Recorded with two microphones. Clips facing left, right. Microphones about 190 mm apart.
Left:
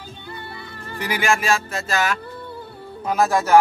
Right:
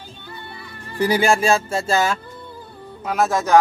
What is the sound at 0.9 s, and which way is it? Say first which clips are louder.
Speech: right 5 dB; 35° right (ahead or behind).